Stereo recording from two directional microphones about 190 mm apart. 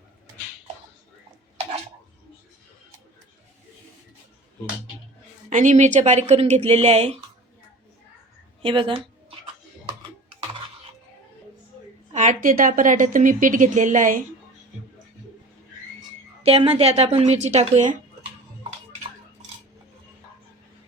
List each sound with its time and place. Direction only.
5.5 s speech: 40° right (ahead or behind)
8.6 s a woman's voice: 25° right (ahead or behind)
12.1 s a woman's voice: 40° right (ahead or behind)
16.4 s speech: 35° right (ahead or behind)